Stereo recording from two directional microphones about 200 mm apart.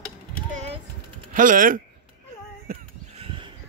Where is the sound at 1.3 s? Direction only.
40° right (ahead or behind).